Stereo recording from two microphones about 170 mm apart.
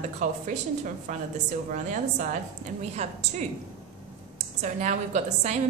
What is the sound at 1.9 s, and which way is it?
A woman's voice, 50° right (ahead or behind).